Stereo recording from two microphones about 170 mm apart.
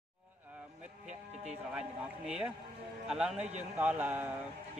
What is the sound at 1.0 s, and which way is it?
Sheep, 40° right (ahead or behind).